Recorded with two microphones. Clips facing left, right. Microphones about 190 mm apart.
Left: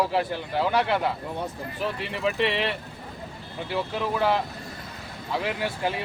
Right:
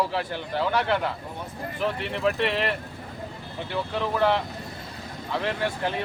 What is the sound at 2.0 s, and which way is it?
Speech, centre (ahead or behind).